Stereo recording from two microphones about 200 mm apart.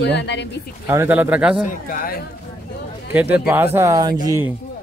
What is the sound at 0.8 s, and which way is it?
Speech, 10° right (ahead or behind).